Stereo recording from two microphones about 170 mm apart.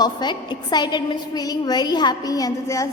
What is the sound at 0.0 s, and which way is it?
A woman's voice, 25° left (ahead or behind).